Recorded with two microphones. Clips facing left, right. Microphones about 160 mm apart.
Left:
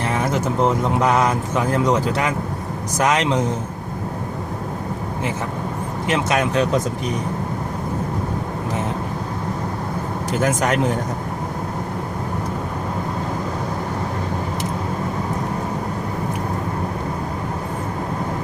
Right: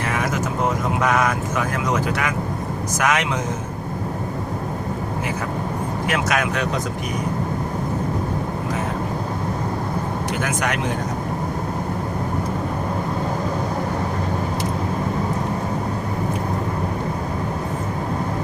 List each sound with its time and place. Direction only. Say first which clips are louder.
0.1 s a sound: left 1 dB; 30° left (ahead or behind)
0.9 s speech: left 2 dB; 30° left (ahead or behind)
6.1 s speech: left 3 dB; 25° left (ahead or behind)
10.4 s speech: left 7 dB; 40° left (ahead or behind)